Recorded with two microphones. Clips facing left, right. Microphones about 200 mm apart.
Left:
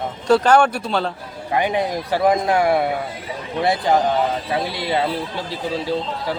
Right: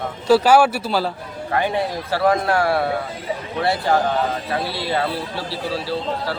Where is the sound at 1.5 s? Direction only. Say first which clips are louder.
Left 1 dB; 15° left (ahead or behind).